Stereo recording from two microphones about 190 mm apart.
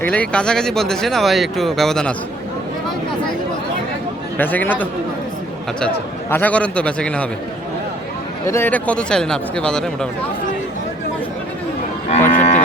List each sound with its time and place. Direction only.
0.0 s speech: 5° left (ahead or behind)
4.4 s a man's voice: 10° left (ahead or behind)
6.3 s a man's voice: 10° left (ahead or behind)
8.4 s speech: 10° left (ahead or behind)
12.3 s moo: 40° left (ahead or behind)